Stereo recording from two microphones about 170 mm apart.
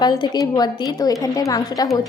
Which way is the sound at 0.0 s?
25° left (ahead or behind).